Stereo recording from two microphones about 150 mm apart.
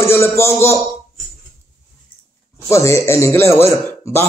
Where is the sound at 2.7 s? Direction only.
20° left (ahead or behind).